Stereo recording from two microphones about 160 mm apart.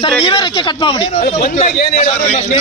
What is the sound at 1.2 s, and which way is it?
Speech, 55° left (ahead or behind).